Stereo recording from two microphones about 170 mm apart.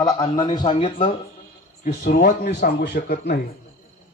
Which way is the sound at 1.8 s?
55° left (ahead or behind).